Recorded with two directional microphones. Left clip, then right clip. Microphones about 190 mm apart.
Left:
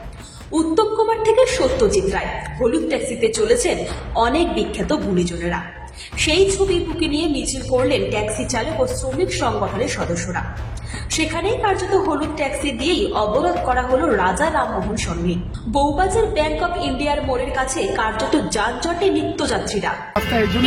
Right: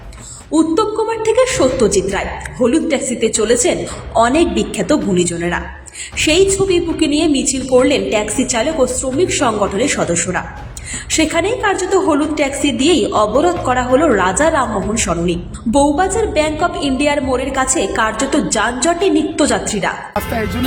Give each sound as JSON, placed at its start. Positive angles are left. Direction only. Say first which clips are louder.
{"t": 0.5, "sound": "a woman's voice", "louder": "right 3 dB", "side_deg": -20}